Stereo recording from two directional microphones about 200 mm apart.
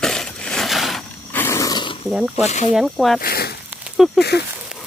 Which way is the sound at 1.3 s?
15° left (ahead or behind).